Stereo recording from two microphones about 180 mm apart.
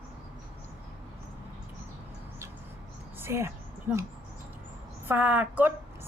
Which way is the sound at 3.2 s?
15° right (ahead or behind).